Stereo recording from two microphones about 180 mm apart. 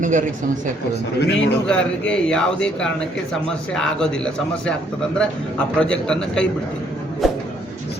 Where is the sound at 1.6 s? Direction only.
5° left (ahead or behind).